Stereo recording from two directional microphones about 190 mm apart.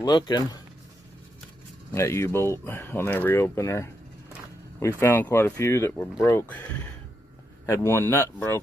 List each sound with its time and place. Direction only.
0.0 s speech: 20° left (ahead or behind)
1.9 s speech: 15° left (ahead or behind)